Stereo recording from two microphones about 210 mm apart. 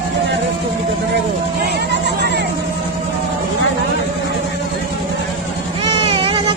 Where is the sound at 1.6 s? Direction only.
50° right (ahead or behind).